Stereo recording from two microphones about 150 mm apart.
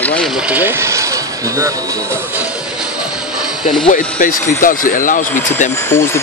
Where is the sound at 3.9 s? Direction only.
65° left (ahead or behind).